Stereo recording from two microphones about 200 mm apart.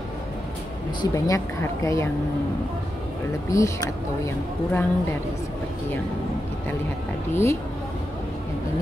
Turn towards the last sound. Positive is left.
turn(degrees=15)  # may be behind; listen again after turning